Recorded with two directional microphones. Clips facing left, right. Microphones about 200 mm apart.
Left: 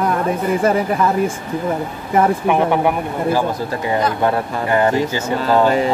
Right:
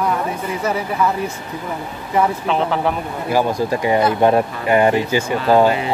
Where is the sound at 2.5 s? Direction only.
15° left (ahead or behind).